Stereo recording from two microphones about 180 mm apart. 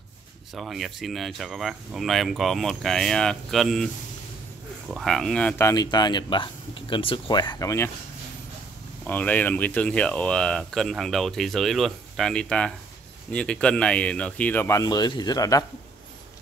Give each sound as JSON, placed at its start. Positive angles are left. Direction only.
{"t": 0.6, "sound": "speech", "side_deg": 0}
{"t": 9.0, "sound": "speech", "side_deg": 10}